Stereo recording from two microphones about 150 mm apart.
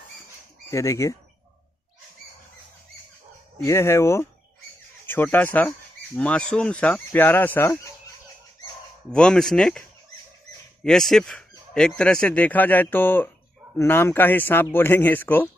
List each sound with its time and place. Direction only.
0.7 s speech: 20° left (ahead or behind)
3.6 s speech: 20° left (ahead or behind)
9.1 s speech: 5° left (ahead or behind)